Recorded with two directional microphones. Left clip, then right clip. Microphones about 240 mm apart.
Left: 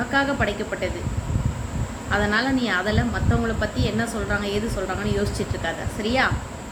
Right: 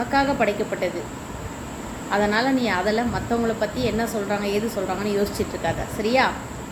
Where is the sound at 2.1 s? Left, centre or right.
Centre.